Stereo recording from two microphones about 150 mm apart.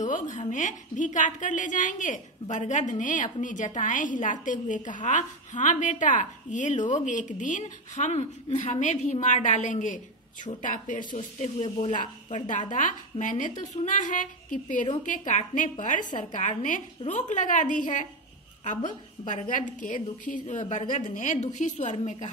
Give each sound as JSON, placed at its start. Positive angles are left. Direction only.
{"t": 0.0, "sound": "a sound", "side_deg": 55}
{"t": 0.5, "sound": "a woman's voice", "side_deg": 55}
{"t": 11.3, "sound": "a woman's voice", "side_deg": 50}
{"t": 19.2, "sound": "a woman's voice", "side_deg": 60}